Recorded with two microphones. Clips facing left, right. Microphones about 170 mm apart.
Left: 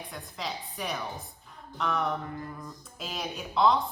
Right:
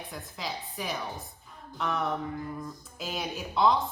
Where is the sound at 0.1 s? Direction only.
Centre (ahead or behind).